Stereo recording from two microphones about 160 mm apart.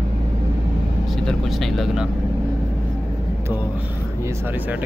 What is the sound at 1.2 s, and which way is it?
Speech, centre (ahead or behind).